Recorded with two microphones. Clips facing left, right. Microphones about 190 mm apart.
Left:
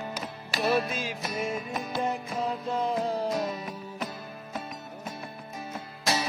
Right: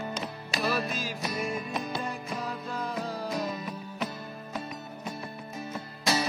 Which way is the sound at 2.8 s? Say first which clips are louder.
Left 6 dB; 25° left (ahead or behind).